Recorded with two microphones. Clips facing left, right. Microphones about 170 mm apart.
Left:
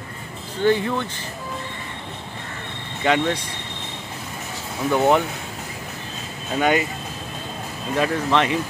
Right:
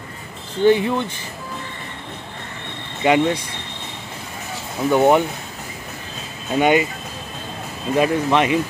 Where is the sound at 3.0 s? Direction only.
15° right (ahead or behind).